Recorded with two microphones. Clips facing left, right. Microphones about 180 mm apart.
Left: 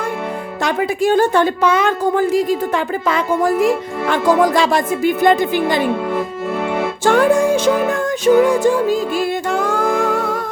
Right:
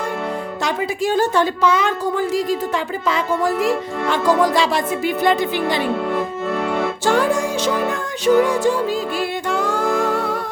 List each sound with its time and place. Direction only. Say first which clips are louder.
0.6 s a woman's voice: left 5 dB; 55° left (ahead or behind)
7.0 s music: left 6 dB; 55° left (ahead or behind)